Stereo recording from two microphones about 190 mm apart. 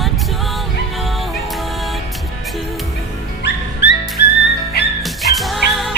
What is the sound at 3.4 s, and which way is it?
Music, 70° left (ahead or behind).